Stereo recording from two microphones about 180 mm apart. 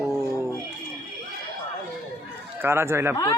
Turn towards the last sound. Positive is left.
turn(degrees=-15)  # may be behind; listen again after turning